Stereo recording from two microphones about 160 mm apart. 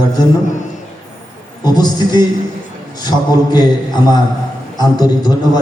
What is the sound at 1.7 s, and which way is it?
A man's voice, 25° left (ahead or behind).